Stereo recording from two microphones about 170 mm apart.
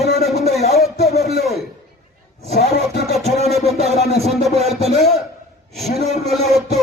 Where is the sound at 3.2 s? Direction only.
40° left (ahead or behind).